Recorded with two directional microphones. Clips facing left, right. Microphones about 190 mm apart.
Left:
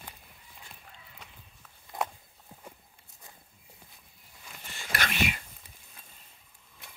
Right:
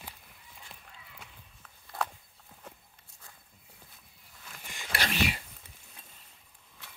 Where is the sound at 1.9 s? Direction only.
15° left (ahead or behind).